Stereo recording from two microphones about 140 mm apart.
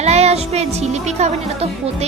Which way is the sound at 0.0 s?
50° right (ahead or behind).